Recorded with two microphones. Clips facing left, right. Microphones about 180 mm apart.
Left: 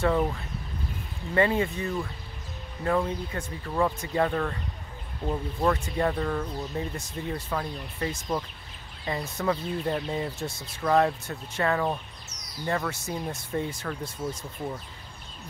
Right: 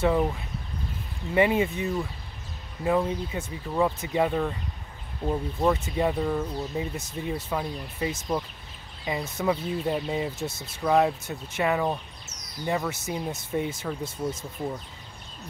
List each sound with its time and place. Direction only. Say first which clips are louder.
0.0 s speech: right 1 dB; 5° right (ahead or behind)
1.3 s speech: right 2 dB; 15° right (ahead or behind)